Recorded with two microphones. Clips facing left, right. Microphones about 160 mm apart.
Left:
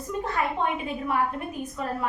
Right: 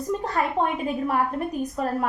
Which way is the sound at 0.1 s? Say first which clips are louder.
Right 2 dB; 35° right (ahead or behind).